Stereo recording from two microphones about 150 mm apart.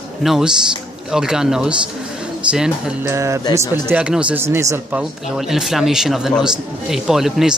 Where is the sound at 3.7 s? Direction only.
10° right (ahead or behind).